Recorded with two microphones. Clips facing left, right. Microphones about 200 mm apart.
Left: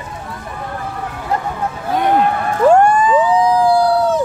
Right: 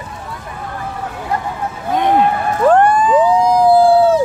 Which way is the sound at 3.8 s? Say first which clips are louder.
Right 4 dB; 25° right (ahead or behind).